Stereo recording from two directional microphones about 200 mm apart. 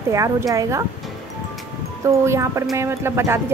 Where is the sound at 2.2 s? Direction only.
15° right (ahead or behind).